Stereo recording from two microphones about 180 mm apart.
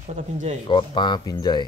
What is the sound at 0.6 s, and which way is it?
Speech, 25° left (ahead or behind).